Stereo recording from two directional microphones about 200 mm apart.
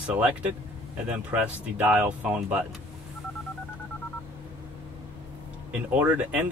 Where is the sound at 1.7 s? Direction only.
10° right (ahead or behind).